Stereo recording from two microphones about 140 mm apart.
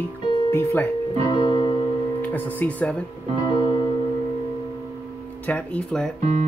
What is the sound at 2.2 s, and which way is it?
Speech, 10° left (ahead or behind).